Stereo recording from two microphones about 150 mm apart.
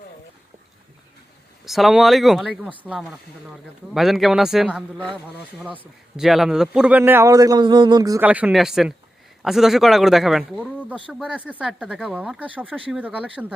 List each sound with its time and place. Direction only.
1.6 s speech: centre (ahead or behind)
6.1 s a man's voice: 5° right (ahead or behind); by 8.2 s 25° right (ahead or behind)
8.2 s a man's voice: 10° right (ahead or behind)